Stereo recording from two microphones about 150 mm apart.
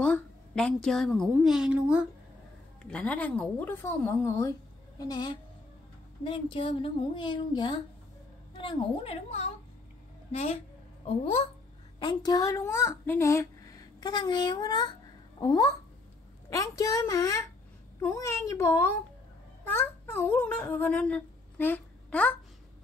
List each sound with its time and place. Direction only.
0.0 s a woman's voice: 5° left (ahead or behind)
2.8 s a woman's voice: 10° left (ahead or behind); by 10.6 s 45° left (ahead or behind)
12.0 s a woman's voice: 30° left (ahead or behind); by 22.3 s 10° left (ahead or behind)